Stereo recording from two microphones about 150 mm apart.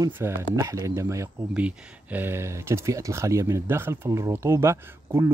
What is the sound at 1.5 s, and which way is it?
Speech, 10° right (ahead or behind).